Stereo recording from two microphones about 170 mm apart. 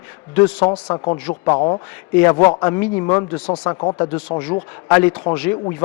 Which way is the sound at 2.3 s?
20° left (ahead or behind).